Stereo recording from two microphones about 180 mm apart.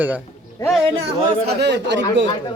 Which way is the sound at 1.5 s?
70° right (ahead or behind).